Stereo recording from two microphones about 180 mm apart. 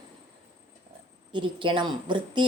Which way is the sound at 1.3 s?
25° right (ahead or behind).